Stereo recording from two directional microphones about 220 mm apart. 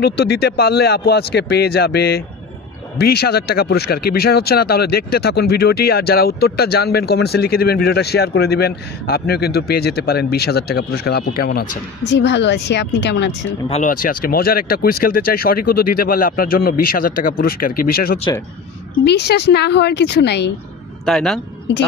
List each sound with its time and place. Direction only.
0.0 s speech: 45° left (ahead or behind)
12.0 s speech: 50° left (ahead or behind)
13.7 s speech: 35° left (ahead or behind); by 20.5 s 50° left (ahead or behind)
21.0 s a man's voice: centre (ahead or behind)